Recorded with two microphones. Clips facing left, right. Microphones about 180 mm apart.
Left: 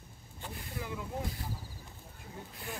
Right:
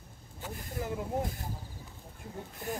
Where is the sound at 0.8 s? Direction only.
45° right (ahead or behind).